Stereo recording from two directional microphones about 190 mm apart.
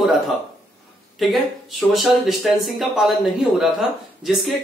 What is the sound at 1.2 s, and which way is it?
Speech, centre (ahead or behind).